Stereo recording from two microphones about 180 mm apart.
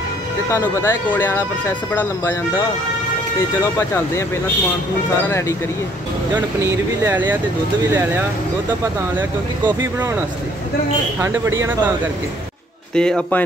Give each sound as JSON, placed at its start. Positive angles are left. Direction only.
{"t": 0.5, "sound": "speech", "side_deg": 15}
{"t": 6.3, "sound": "speech", "side_deg": -15}
{"t": 12.9, "sound": "a man's voice", "side_deg": 5}